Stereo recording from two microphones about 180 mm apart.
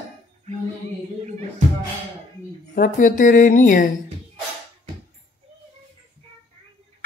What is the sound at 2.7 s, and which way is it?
Speech, 50° left (ahead or behind).